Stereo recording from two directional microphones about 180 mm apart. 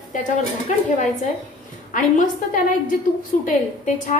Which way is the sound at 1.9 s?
45° left (ahead or behind).